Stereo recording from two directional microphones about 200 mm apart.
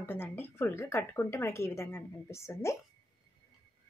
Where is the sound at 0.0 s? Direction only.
10° left (ahead or behind).